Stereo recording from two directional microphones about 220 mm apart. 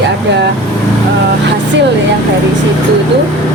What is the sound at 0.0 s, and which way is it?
Vehicle, 50° right (ahead or behind).